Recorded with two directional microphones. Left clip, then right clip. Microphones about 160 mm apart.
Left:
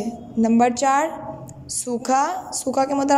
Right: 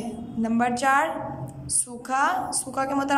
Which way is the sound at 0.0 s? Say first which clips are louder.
Left 7 dB; 30° left (ahead or behind).